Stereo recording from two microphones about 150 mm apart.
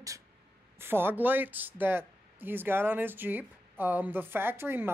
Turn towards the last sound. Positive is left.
turn(degrees=-15)  # may be behind; listen again after turning